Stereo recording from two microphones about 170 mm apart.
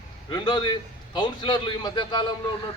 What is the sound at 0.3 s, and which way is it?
A man's voice, 25° left (ahead or behind).